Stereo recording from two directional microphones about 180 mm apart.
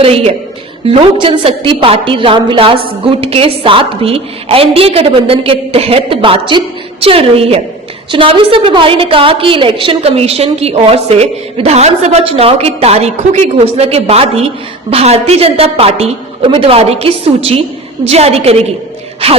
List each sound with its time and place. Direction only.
0.0 s a woman's voice: 35° right (ahead or behind)